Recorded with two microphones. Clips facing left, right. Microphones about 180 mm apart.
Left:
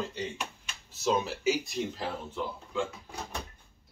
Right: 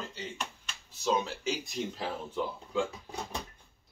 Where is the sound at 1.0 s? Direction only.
5° left (ahead or behind).